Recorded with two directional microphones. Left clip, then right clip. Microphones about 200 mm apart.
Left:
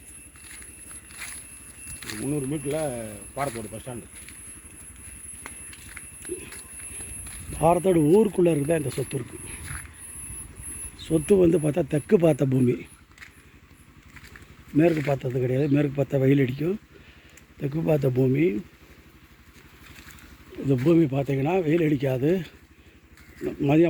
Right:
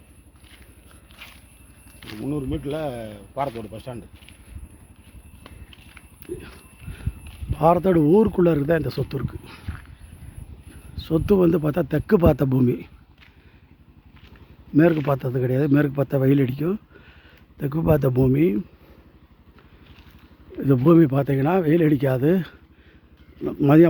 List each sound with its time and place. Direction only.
2.0 s a sound: 10° left (ahead or behind)
2.2 s a man's voice: 10° right (ahead or behind)
7.5 s a sound: 10° right (ahead or behind)
7.8 s speech: 15° right (ahead or behind)
11.1 s a man's voice: 5° right (ahead or behind)
14.7 s a man's voice: 20° right (ahead or behind)
20.6 s speech: 30° right (ahead or behind)